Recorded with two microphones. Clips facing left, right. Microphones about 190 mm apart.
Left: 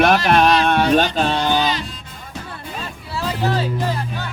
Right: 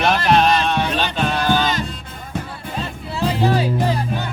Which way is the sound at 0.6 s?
55° left (ahead or behind).